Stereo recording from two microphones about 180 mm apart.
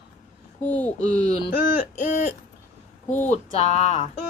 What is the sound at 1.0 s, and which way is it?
Speech, 40° left (ahead or behind).